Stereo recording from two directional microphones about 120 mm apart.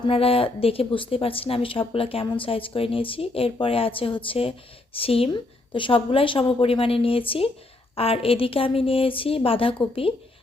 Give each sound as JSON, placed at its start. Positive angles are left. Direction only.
{"t": 0.0, "sound": "speech", "side_deg": 50}